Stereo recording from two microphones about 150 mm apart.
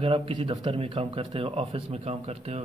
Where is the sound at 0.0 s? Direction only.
35° right (ahead or behind).